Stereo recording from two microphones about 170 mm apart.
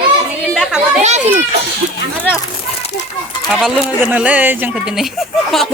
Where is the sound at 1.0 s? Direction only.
40° right (ahead or behind).